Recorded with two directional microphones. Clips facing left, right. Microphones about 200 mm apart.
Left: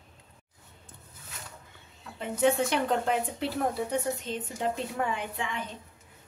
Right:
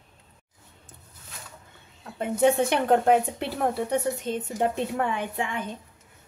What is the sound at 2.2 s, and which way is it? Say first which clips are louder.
Speech: right 4 dB; 55° right (ahead or behind).